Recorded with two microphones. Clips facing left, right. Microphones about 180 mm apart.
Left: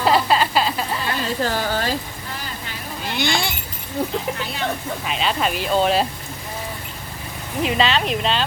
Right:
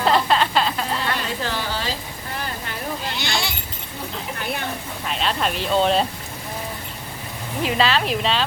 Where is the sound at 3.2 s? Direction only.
55° left (ahead or behind).